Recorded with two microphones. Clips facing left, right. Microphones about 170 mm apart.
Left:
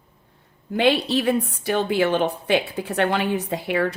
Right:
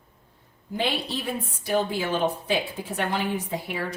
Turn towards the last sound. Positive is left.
turn(degrees=65)  # may be behind; listen again after turning